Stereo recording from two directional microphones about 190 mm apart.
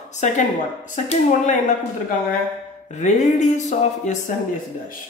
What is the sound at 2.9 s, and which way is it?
Speech, 40° left (ahead or behind).